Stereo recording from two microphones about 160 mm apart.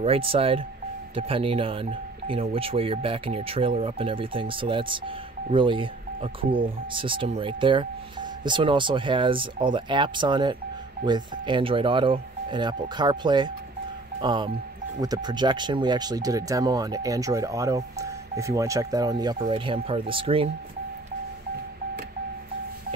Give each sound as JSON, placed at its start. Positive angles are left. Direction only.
{"t": 0.0, "sound": "speech", "side_deg": -35}